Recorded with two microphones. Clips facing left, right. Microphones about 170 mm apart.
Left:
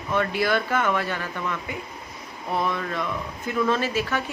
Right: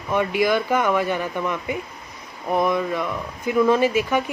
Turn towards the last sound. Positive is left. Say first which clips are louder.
# right 6 dB
turn(degrees=-15)  # may be behind; listen again after turning